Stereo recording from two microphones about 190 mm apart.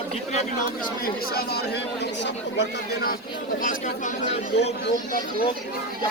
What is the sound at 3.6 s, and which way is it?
Speech, 45° left (ahead or behind).